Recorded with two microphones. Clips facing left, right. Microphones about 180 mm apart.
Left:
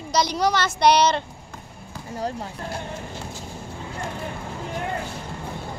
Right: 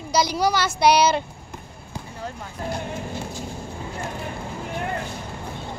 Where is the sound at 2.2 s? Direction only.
35° left (ahead or behind).